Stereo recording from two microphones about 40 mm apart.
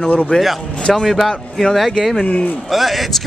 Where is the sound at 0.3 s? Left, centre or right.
Left.